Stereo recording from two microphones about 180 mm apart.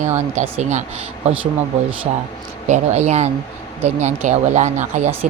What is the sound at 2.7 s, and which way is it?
Speech, 40° right (ahead or behind).